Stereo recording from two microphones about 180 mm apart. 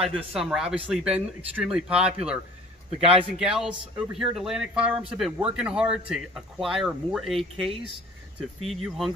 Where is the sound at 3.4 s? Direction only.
Centre (ahead or behind).